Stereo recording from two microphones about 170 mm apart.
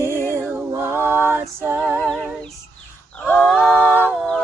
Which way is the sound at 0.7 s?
15° right (ahead or behind).